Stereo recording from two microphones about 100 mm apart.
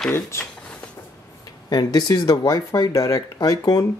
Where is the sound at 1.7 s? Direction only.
40° left (ahead or behind).